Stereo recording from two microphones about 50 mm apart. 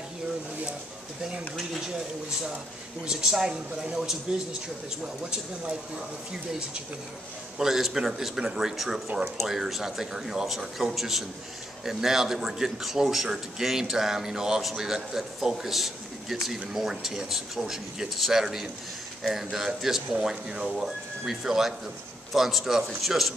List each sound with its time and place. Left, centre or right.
3.1 s a man's voice: centre
7.5 s a man's voice: centre